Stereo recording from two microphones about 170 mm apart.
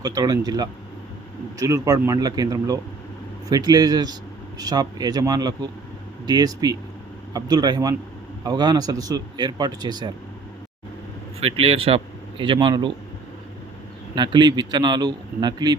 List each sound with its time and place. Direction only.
0.0 s speech: 25° right (ahead or behind)
11.3 s a man's voice: 35° right (ahead or behind)
14.2 s speech: 25° right (ahead or behind)